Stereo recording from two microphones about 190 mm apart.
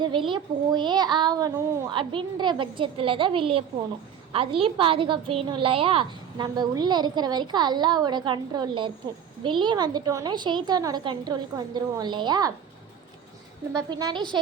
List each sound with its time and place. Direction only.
0.0 s a woman's voice: 25° right (ahead or behind)
13.9 s a woman's voice: 25° right (ahead or behind)